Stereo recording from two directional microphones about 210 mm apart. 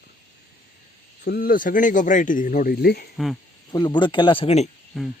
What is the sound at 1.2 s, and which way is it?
Speech, 50° left (ahead or behind).